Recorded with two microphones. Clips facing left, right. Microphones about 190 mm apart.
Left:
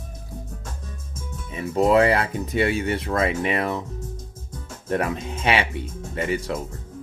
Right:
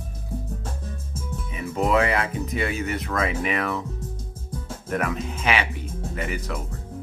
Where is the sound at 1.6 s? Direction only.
30° left (ahead or behind).